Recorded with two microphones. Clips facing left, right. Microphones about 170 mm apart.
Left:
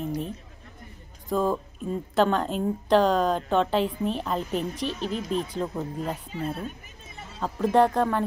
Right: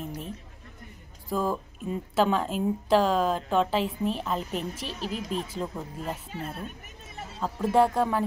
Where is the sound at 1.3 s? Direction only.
5° right (ahead or behind).